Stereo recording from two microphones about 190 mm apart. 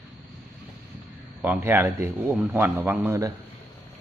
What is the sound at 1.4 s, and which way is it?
A man's voice, 10° right (ahead or behind).